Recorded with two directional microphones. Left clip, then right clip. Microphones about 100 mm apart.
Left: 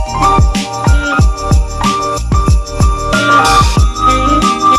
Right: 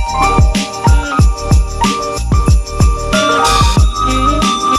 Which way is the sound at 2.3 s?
15° left (ahead or behind).